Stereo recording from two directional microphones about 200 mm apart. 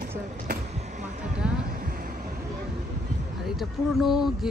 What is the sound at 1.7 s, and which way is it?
Vehicle, 45° right (ahead or behind).